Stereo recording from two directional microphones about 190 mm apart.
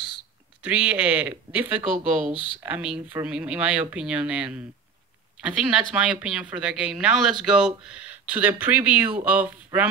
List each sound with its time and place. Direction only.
0.6 s speech: 5° right (ahead or behind)